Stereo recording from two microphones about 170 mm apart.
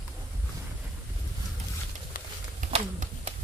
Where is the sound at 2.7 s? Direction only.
45° right (ahead or behind).